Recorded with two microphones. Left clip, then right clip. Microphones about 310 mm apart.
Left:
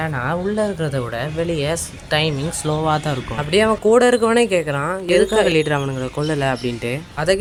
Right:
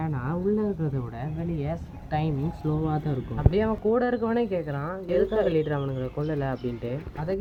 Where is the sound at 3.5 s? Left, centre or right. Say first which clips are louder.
Left 11 dB; right.